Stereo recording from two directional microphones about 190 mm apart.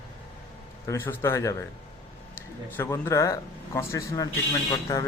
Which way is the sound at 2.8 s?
10° left (ahead or behind).